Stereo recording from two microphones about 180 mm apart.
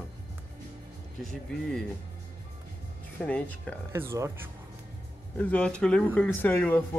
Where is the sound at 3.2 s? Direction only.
10° left (ahead or behind).